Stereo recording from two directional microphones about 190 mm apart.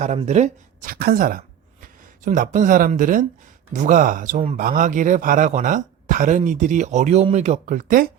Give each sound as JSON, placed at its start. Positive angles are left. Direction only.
{"t": 0.0, "sound": "speech", "side_deg": -35}